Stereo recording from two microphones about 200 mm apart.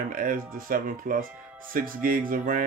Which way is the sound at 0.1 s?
45° right (ahead or behind).